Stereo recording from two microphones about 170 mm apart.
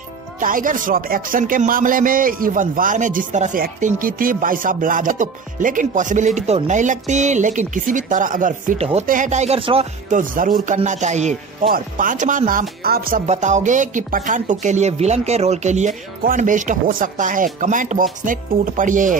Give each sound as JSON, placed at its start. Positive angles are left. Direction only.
{"t": 0.4, "sound": "speech", "side_deg": -50}
{"t": 10.0, "sound": "speech", "side_deg": -50}
{"t": 13.3, "sound": "speech", "side_deg": -45}
{"t": 16.2, "sound": "speech", "side_deg": -55}